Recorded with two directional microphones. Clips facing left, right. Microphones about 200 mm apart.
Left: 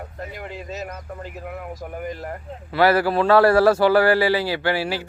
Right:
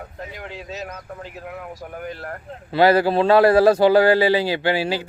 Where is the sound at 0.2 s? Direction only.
5° left (ahead or behind).